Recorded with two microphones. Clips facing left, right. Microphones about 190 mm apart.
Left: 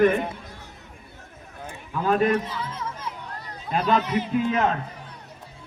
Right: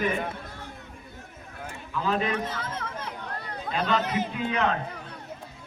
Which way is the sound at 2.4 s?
60° right (ahead or behind).